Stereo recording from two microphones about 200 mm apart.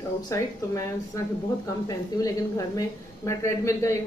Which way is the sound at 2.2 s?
15° left (ahead or behind).